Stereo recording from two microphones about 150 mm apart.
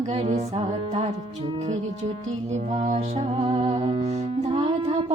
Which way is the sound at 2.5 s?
50° right (ahead or behind).